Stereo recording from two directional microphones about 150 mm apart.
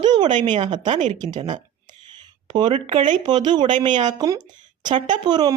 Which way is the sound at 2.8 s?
45° right (ahead or behind).